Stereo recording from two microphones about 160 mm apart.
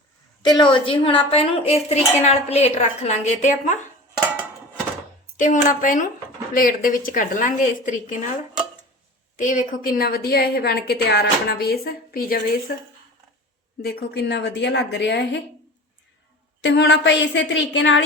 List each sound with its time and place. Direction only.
0.4 s speech: 30° left (ahead or behind); by 3.8 s 50° left (ahead or behind)
5.6 s a woman's voice: 55° left (ahead or behind)
13.8 s a woman's voice: 85° left
16.6 s a woman's voice: 90° left